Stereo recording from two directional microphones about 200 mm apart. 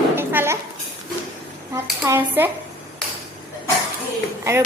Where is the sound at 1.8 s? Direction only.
10° right (ahead or behind).